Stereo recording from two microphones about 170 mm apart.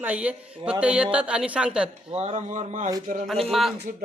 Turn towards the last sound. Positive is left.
turn(degrees=0)  # may be behind; listen again after turning